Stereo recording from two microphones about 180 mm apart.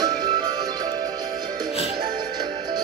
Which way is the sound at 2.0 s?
25° right (ahead or behind).